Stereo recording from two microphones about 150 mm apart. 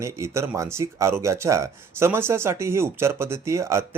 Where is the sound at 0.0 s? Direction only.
20° right (ahead or behind).